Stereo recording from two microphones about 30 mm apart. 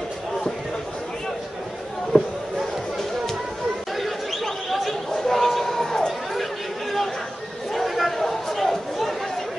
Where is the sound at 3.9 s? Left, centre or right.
Centre.